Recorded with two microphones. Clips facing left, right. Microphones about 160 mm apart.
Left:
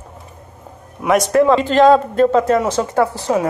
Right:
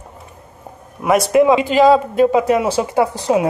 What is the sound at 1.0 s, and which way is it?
Speech, centre (ahead or behind).